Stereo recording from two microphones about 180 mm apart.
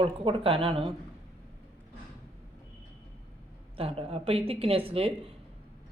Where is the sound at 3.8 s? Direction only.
35° right (ahead or behind).